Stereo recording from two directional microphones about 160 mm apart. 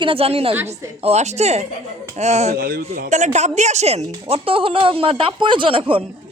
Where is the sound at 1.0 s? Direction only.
40° right (ahead or behind).